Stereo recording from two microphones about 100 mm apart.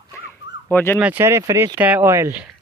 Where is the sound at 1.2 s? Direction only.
30° right (ahead or behind).